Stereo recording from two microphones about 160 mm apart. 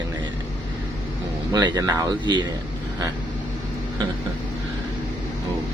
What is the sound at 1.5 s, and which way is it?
Speech, 25° right (ahead or behind).